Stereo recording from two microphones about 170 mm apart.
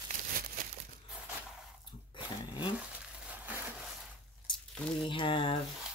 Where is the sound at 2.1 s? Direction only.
25° left (ahead or behind).